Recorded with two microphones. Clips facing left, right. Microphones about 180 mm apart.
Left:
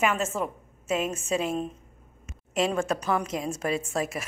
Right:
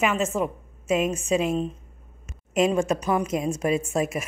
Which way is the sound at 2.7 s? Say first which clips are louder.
Right 4 dB; 15° right (ahead or behind).